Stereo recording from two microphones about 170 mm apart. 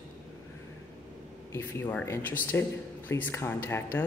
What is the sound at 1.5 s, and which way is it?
Speech, 15° left (ahead or behind).